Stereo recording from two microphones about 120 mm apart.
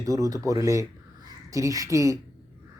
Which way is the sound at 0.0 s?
30° right (ahead or behind).